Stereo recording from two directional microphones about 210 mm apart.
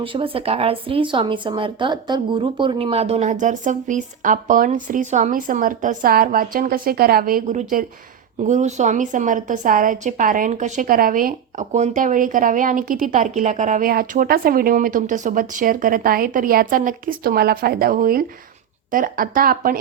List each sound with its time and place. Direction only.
0.0 s a woman's voice: 25° right (ahead or behind); by 19.8 s 45° right (ahead or behind)